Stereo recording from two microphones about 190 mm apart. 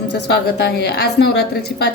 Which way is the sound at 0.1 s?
60° left (ahead or behind).